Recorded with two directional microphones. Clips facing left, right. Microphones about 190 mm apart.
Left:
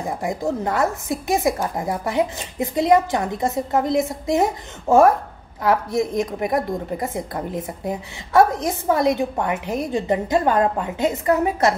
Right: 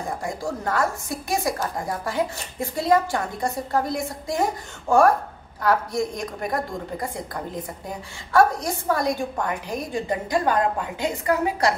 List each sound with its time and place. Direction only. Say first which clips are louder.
0.2 s a woman's voice: left 5 dB; 20° left (ahead or behind)
6.1 s a woman's voice: left 6 dB; 20° left (ahead or behind)